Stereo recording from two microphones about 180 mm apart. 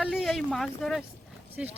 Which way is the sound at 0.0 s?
Centre (ahead or behind).